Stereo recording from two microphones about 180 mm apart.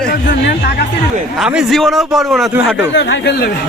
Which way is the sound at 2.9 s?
85° left.